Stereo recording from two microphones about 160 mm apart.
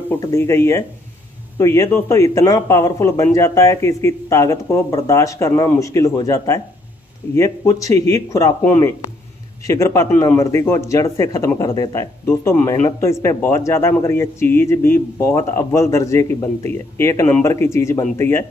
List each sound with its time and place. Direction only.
0.2 s a man's voice: 20° left (ahead or behind)